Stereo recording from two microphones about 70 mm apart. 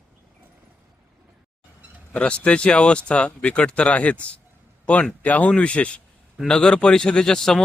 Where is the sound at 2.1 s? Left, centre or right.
Centre.